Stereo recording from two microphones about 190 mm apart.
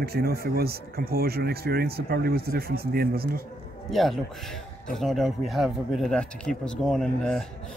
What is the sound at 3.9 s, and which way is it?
A man's voice, centre (ahead or behind).